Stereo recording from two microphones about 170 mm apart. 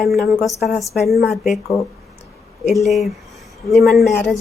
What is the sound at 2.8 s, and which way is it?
Speech, centre (ahead or behind).